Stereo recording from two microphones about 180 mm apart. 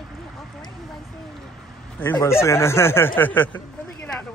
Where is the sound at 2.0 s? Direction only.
15° left (ahead or behind).